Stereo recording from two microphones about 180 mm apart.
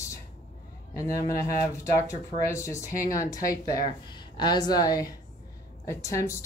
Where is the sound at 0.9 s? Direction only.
15° left (ahead or behind).